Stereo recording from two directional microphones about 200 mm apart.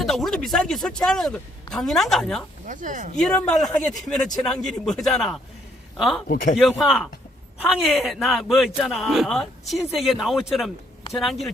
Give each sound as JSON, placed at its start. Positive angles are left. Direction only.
{"t": 0.0, "sound": "a man's voice", "side_deg": 0}
{"t": 2.6, "sound": "speech", "side_deg": -40}
{"t": 3.2, "sound": "a man's voice", "side_deg": 5}
{"t": 6.2, "sound": "speech", "side_deg": 45}
{"t": 6.6, "sound": "a man's voice", "side_deg": 0}